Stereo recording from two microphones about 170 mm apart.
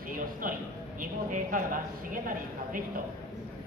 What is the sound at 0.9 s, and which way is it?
Speech, 55° right (ahead or behind).